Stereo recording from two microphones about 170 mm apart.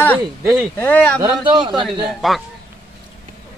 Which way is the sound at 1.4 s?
25° right (ahead or behind).